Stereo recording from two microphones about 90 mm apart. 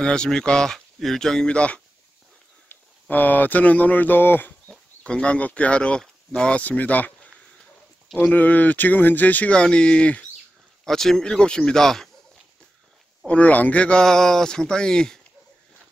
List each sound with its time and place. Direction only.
0.0 s speech: 10° left (ahead or behind)
4.6 s speech: 10° left (ahead or behind)
8.2 s a man's voice: 15° left (ahead or behind)
13.3 s speech: 15° left (ahead or behind)